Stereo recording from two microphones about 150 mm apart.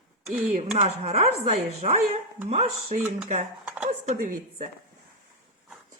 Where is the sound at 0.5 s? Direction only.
45° right (ahead or behind).